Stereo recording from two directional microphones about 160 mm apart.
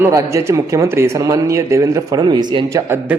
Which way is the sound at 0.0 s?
20° right (ahead or behind).